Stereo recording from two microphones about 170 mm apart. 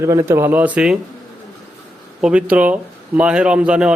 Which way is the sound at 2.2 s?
5° right (ahead or behind).